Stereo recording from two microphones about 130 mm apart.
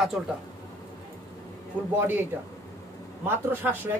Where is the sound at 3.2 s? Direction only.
15° right (ahead or behind).